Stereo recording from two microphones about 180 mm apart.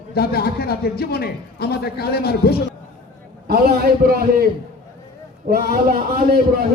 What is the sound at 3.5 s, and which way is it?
A man's voice, 60° right (ahead or behind).